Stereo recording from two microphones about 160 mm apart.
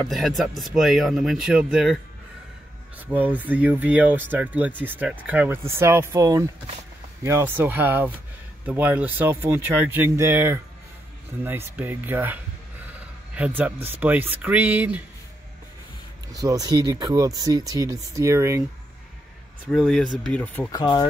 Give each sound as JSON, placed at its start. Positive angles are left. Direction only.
{"t": 0.0, "sound": "speech", "side_deg": 0}
{"t": 3.1, "sound": "a man's voice", "side_deg": -10}
{"t": 16.3, "sound": "speech", "side_deg": -20}
{"t": 19.7, "sound": "speech", "side_deg": 0}
{"t": 20.7, "sound": "speech", "side_deg": 30}